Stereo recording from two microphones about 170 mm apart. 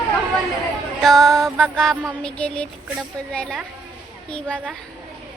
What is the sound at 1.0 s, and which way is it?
Music, centre (ahead or behind).